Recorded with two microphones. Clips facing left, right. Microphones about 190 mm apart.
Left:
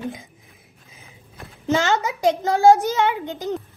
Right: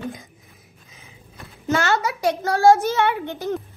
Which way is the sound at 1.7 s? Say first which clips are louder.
Left 1 dB; 20° left (ahead or behind).